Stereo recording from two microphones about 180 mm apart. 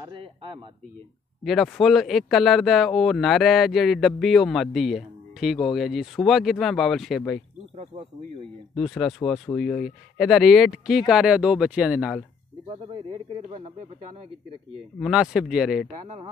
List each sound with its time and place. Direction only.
0.1 s speech: 25° right (ahead or behind)
1.4 s speech: centre (ahead or behind)
8.9 s speech: centre (ahead or behind)
12.6 s speech: 30° right (ahead or behind)
15.0 s speech: 5° right (ahead or behind)